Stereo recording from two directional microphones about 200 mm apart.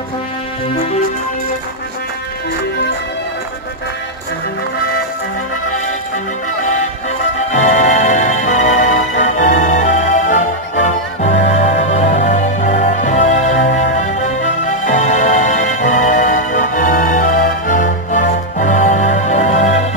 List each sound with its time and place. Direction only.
6.6 s music: 35° left (ahead or behind)